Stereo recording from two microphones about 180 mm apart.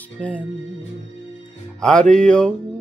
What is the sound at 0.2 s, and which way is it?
Speech, 10° left (ahead or behind).